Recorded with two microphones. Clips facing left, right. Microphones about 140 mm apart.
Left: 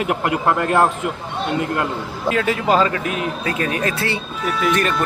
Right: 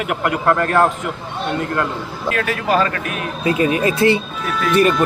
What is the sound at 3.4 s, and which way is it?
Speech, 10° right (ahead or behind).